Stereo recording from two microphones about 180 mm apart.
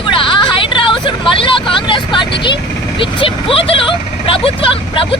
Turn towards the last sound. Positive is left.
turn(degrees=30)  # may be behind; listen again after turning